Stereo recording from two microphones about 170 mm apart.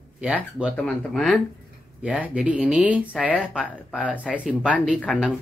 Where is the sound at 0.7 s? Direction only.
5° left (ahead or behind).